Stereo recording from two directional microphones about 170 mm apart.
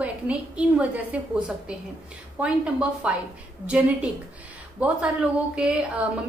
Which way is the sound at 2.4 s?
5° right (ahead or behind).